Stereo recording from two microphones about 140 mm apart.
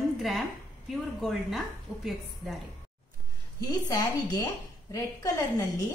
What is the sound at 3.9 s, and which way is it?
A woman's voice, 25° left (ahead or behind).